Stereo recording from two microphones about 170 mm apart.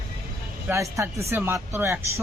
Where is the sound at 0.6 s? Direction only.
15° right (ahead or behind).